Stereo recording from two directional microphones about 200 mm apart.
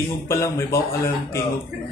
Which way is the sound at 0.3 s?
15° left (ahead or behind).